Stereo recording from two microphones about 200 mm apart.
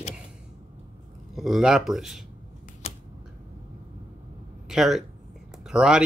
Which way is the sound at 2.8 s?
30° left (ahead or behind).